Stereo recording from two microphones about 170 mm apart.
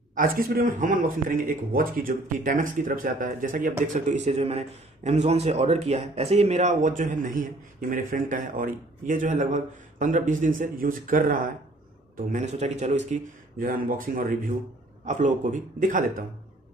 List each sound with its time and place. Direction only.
0.1 s a man's voice: 60° right (ahead or behind)
12.3 s a man's voice: 45° right (ahead or behind)